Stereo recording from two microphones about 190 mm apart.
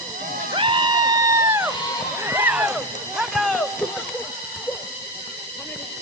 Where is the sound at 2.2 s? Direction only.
10° right (ahead or behind).